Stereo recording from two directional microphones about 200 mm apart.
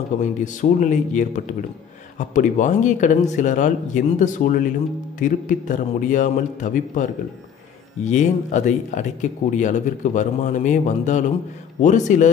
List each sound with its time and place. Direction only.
0.2 s speech: 40° left (ahead or behind)